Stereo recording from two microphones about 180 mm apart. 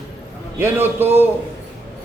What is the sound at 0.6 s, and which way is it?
Speech, 10° right (ahead or behind).